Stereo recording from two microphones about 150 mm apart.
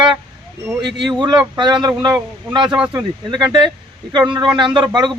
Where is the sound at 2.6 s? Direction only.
10° right (ahead or behind).